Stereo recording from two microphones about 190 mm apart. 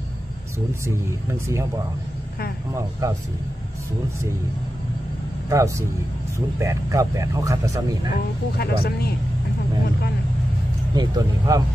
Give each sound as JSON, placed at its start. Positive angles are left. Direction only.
{"t": 2.7, "sound": "speech", "side_deg": -15}
{"t": 5.5, "sound": "speech", "side_deg": -15}
{"t": 8.1, "sound": "speech", "side_deg": 55}
{"t": 11.0, "sound": "speech", "side_deg": -20}